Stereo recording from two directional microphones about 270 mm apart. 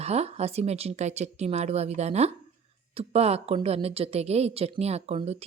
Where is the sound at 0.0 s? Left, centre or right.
Right.